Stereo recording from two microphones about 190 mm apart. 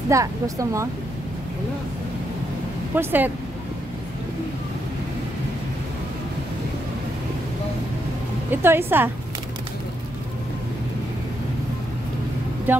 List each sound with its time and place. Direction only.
0.1 s speech: 15° right (ahead or behind)
3.0 s speech: 10° right (ahead or behind)
8.5 s speech: 10° right (ahead or behind)
12.7 s speech: 10° right (ahead or behind)